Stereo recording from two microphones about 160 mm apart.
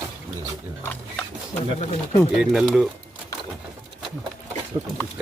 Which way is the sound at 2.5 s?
Centre (ahead or behind).